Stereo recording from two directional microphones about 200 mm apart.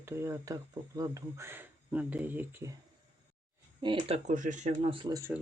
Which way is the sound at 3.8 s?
25° right (ahead or behind).